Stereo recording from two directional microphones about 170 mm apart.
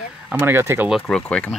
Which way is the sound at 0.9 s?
5° left (ahead or behind).